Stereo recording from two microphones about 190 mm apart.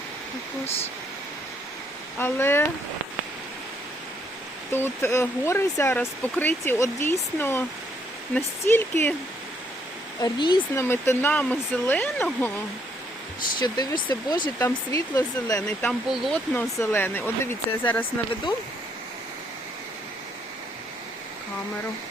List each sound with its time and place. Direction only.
2.1 s speech: 10° left (ahead or behind)
4.7 s speech: 10° left (ahead or behind)
10.2 s speech: 20° left (ahead or behind)
10.8 s speech: 10° left (ahead or behind)
13.6 s speech: 25° left (ahead or behind)
15.9 s speech: centre (ahead or behind)
16.6 s speech: 10° left (ahead or behind)